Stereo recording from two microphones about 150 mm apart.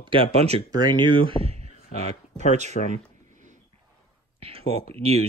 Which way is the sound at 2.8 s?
60° left (ahead or behind).